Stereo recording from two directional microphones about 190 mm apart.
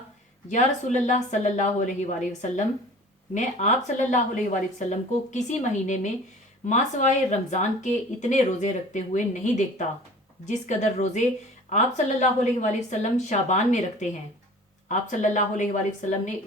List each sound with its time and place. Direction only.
0.4 s speech: 40° left (ahead or behind)